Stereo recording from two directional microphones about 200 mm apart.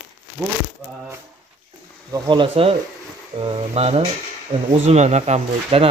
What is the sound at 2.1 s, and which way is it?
Speech, 25° right (ahead or behind).